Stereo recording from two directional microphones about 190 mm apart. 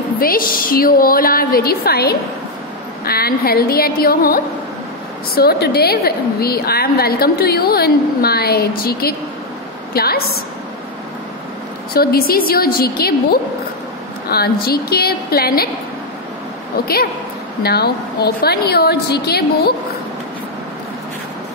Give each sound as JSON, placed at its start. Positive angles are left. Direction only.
{"t": 0.2, "sound": "a woman's voice", "side_deg": 50}
{"t": 11.9, "sound": "a woman's voice", "side_deg": 50}
{"t": 16.8, "sound": "a woman's voice", "side_deg": 55}